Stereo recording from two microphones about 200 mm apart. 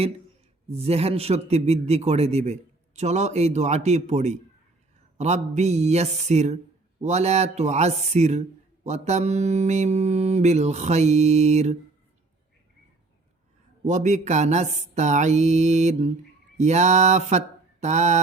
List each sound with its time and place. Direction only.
0.7 s a man's voice: 30° right (ahead or behind)
13.8 s a man's voice: 35° right (ahead or behind)
16.6 s mantra: 35° right (ahead or behind)